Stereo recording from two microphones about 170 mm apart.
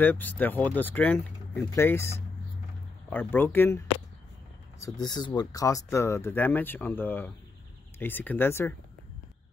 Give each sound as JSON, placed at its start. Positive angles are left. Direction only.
{"t": 0.0, "sound": "speech", "side_deg": 10}